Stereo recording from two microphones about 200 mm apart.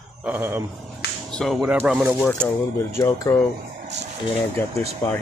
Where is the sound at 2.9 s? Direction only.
15° left (ahead or behind).